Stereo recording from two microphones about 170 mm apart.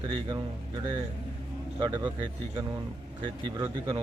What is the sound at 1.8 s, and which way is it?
Speech, 20° right (ahead or behind).